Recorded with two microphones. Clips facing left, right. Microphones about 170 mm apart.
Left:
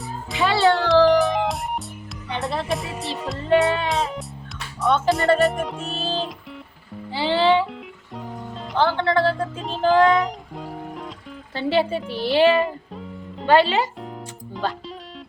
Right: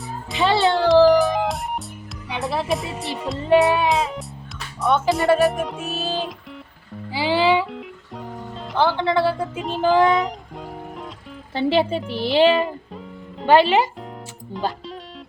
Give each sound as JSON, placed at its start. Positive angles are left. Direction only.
{"t": 0.3, "sound": "music", "side_deg": -20}
{"t": 0.9, "sound": "music", "side_deg": 0}
{"t": 5.0, "sound": "speech", "side_deg": 0}
{"t": 7.1, "sound": "music", "side_deg": -10}
{"t": 8.8, "sound": "speech", "side_deg": -15}
{"t": 11.5, "sound": "speech", "side_deg": -20}